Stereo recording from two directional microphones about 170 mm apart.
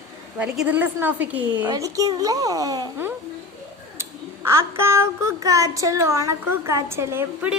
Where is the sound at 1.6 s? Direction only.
20° right (ahead or behind).